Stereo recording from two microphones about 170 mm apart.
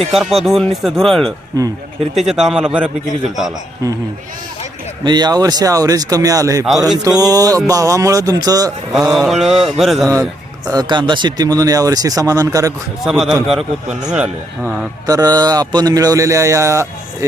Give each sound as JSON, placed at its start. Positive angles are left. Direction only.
{"t": 0.1, "sound": "speech", "side_deg": 0}
{"t": 1.5, "sound": "speech", "side_deg": -20}
{"t": 2.1, "sound": "speech", "side_deg": 0}
{"t": 5.0, "sound": "speech", "side_deg": -25}
{"t": 9.1, "sound": "speech", "side_deg": 0}
{"t": 10.7, "sound": "speech", "side_deg": -25}
{"t": 13.1, "sound": "speech", "side_deg": -5}
{"t": 15.0, "sound": "speech", "side_deg": -20}